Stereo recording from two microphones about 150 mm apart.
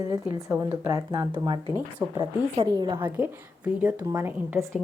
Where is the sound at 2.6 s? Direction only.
25° right (ahead or behind).